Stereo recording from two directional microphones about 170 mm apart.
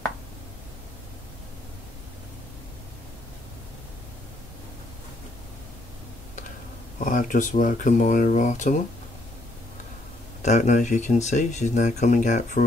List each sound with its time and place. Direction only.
7.1 s speech: 50° left (ahead or behind)
10.4 s speech: 45° left (ahead or behind)